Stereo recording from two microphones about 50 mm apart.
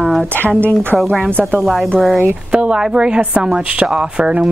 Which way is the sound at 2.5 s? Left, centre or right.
Right.